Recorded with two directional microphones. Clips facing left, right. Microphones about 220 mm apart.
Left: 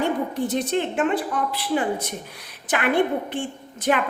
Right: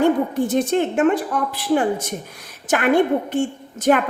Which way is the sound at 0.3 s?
45° right (ahead or behind).